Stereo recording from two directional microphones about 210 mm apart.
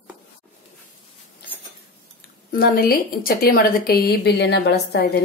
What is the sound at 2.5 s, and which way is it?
A woman's voice, 45° left (ahead or behind).